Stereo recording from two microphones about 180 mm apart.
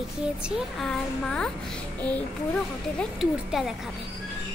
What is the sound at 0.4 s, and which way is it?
A child's voice, 5° left (ahead or behind).